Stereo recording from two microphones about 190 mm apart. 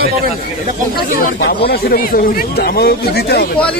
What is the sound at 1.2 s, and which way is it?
Speech, 50° left (ahead or behind).